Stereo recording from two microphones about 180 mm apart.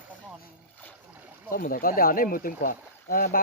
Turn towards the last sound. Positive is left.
turn(degrees=55)  # may be behind; listen again after turning